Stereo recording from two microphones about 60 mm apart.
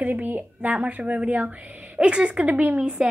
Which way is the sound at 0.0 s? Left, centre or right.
Right.